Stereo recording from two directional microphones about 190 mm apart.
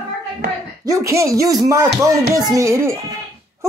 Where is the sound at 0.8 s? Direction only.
15° right (ahead or behind).